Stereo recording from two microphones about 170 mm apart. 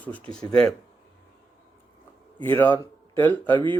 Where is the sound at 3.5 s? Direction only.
30° right (ahead or behind).